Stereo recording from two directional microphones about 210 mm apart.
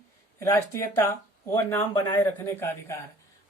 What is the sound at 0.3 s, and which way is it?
Speech, 15° left (ahead or behind).